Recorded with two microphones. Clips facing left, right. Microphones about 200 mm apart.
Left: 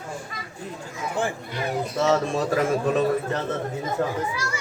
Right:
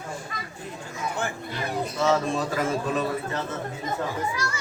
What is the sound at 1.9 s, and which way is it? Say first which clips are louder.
A man's voice: left 2 dB; 40° left (ahead or behind).